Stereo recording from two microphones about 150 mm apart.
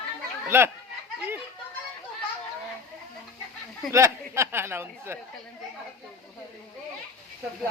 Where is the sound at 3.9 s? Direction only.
15° right (ahead or behind).